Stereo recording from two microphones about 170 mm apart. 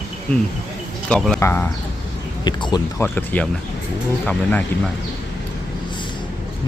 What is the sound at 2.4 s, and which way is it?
Speech, 25° left (ahead or behind).